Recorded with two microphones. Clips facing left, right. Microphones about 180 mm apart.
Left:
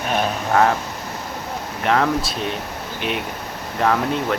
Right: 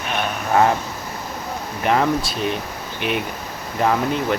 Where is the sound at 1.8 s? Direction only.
5° right (ahead or behind).